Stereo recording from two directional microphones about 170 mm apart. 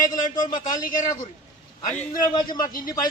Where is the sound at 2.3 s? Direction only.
25° left (ahead or behind).